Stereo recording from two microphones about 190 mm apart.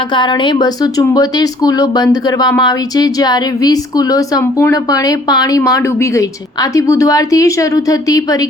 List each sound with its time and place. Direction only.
0.1 s speech: 25° left (ahead or behind)